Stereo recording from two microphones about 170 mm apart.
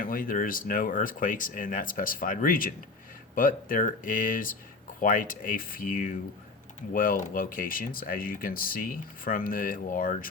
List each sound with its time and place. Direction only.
0.0 s speech: 55° left (ahead or behind)